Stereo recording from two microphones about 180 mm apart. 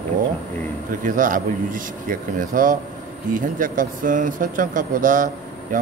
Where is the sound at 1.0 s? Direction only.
50° right (ahead or behind).